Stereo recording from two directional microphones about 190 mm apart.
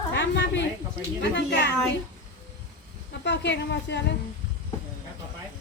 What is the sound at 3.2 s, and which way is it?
Speech, 65° left (ahead or behind).